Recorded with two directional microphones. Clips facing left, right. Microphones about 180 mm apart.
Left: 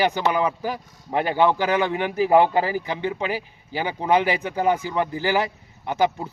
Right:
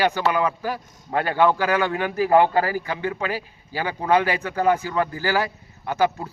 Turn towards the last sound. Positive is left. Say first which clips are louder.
# even
turn(degrees=20)  # may be behind; listen again after turning